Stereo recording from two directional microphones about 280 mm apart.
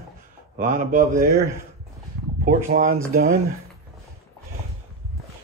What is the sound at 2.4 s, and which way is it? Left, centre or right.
Speech, right.